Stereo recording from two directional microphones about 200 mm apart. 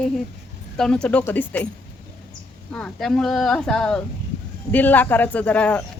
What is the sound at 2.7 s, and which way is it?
Speech, 5° left (ahead or behind).